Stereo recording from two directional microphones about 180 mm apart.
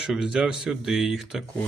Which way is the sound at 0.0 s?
5° right (ahead or behind).